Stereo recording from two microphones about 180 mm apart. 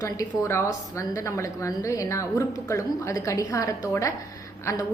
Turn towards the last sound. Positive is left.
turn(degrees=15)  # may be behind; listen again after turning